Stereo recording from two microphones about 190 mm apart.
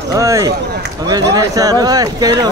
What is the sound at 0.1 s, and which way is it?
Speech, 15° right (ahead or behind).